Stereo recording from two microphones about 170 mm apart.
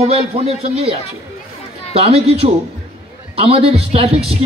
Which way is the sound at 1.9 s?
35° right (ahead or behind).